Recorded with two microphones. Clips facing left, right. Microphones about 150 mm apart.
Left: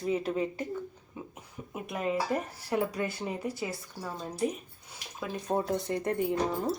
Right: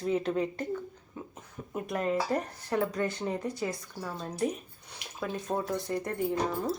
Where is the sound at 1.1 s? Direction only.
10° left (ahead or behind).